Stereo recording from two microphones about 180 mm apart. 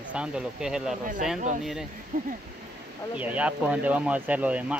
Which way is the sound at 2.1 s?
45° right (ahead or behind).